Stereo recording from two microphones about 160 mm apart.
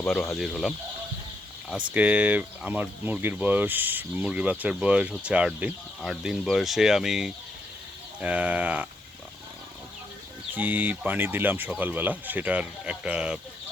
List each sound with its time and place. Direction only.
0.0 s speech: 5° left (ahead or behind)
1.9 s speech: 10° right (ahead or behind)
10.5 s speech: 10° right (ahead or behind)